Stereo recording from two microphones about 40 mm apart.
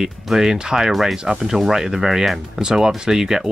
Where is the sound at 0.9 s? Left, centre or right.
Centre.